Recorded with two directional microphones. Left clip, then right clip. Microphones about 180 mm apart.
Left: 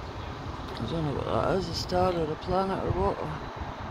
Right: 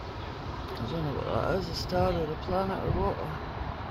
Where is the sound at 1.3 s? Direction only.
20° left (ahead or behind).